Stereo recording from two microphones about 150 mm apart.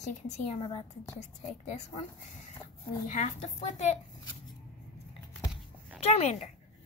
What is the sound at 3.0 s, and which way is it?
Speech, 50° left (ahead or behind).